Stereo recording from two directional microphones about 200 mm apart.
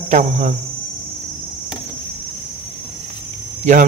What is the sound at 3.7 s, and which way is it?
Speech, 35° right (ahead or behind).